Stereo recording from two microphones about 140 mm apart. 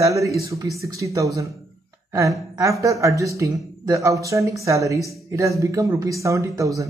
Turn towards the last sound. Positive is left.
turn(degrees=-25)  # may be behind; listen again after turning